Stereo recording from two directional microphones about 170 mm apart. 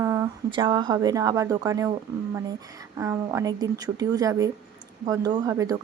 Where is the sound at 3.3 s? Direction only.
20° right (ahead or behind).